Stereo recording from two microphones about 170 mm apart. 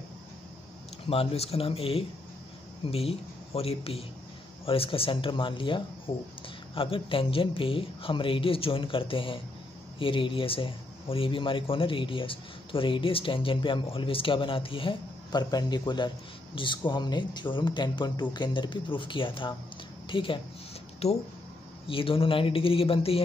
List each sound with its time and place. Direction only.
1.0 s speech: 35° left (ahead or behind)